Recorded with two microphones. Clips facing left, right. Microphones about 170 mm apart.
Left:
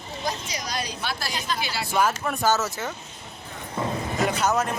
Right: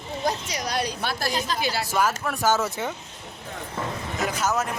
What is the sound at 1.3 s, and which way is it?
Speech, 40° right (ahead or behind).